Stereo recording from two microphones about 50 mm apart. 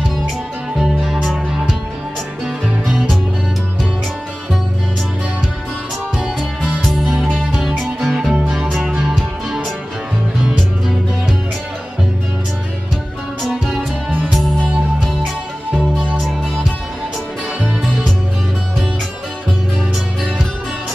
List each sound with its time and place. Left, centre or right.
0.7 s music: centre
7.3 s music: centre
7.8 s music: centre
8.5 s music: centre
13.7 s music: centre
17.6 s music: right